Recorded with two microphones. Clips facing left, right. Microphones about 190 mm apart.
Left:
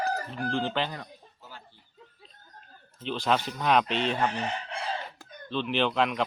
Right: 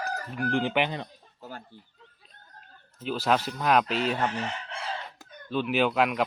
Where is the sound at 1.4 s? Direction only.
50° right (ahead or behind).